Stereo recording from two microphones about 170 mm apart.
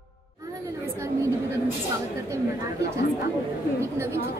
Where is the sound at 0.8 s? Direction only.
15° right (ahead or behind).